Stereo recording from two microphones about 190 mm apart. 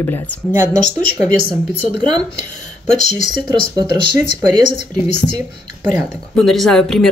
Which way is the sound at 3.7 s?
20° right (ahead or behind).